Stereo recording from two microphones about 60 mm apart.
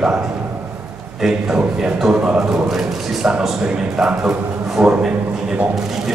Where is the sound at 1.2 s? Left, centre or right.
Centre.